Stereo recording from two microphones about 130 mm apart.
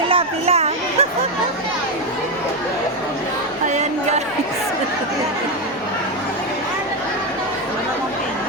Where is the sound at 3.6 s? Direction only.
65° right (ahead or behind).